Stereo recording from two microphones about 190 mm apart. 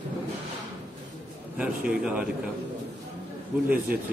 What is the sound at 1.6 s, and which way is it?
Speech, 5° right (ahead or behind).